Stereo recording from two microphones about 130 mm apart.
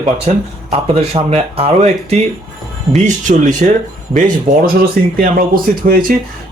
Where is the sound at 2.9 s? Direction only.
75° right (ahead or behind).